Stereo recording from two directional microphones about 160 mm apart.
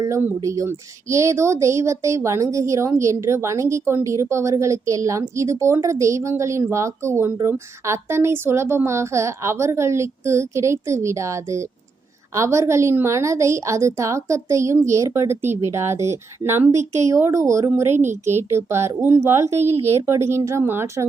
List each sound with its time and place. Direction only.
0.0 s a woman's voice: 15° right (ahead or behind)
16.7 s speech: 45° right (ahead or behind)
17.1 s a woman's voice: 15° right (ahead or behind)